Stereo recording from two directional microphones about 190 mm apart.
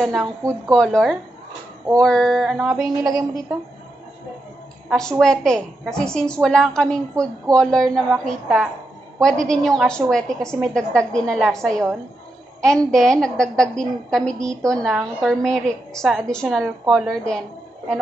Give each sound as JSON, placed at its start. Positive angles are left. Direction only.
{"t": 0.0, "sound": "a woman's voice", "side_deg": 0}
{"t": 3.0, "sound": "a woman's voice", "side_deg": -15}
{"t": 4.8, "sound": "a woman's voice", "side_deg": 5}